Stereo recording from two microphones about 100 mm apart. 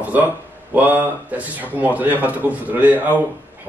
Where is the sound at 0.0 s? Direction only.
15° right (ahead or behind).